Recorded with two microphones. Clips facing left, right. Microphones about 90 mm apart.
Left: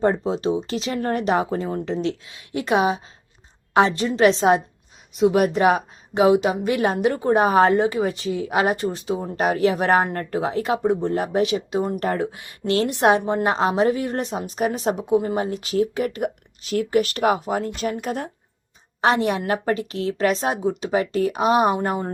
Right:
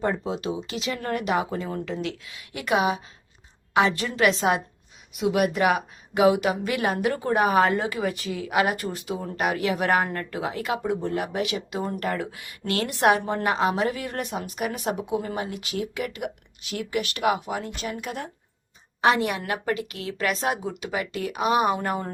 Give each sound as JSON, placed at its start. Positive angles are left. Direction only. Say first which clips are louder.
{"t": 0.0, "sound": "a woman's voice", "louder": "left 6 dB", "side_deg": 35}
{"t": 11.8, "sound": "a woman's voice", "louder": "left 4 dB", "side_deg": 20}